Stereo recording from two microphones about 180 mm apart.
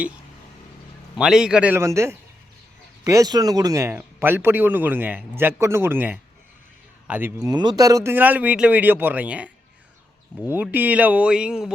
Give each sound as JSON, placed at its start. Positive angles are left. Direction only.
{"t": 1.2, "sound": "speech", "side_deg": -5}
{"t": 7.4, "sound": "speech", "side_deg": -20}
{"t": 10.5, "sound": "speech", "side_deg": -10}